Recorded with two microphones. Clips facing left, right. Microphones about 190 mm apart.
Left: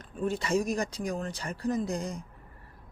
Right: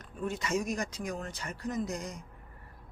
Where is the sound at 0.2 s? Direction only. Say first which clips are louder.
Left 4 dB; 30° left (ahead or behind).